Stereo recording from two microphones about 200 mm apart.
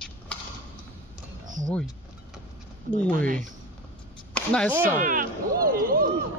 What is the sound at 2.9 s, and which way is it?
Speech, 10° left (ahead or behind).